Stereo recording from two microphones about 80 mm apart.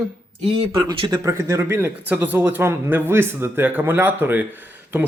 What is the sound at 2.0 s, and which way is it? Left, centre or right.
Speech, right.